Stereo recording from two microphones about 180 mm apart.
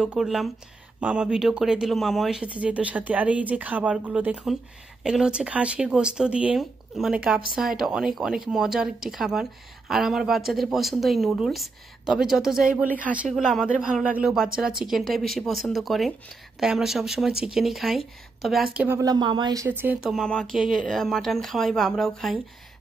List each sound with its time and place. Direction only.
0.0 s speech: 5° right (ahead or behind)
18.9 s speech: 20° right (ahead or behind); by 22.3 s centre (ahead or behind)